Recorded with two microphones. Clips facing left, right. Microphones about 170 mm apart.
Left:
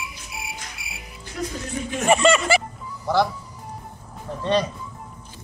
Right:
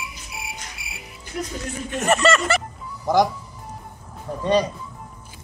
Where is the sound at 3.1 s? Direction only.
15° right (ahead or behind).